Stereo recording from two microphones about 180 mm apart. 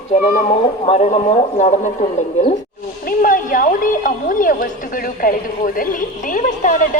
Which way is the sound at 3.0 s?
50° left (ahead or behind).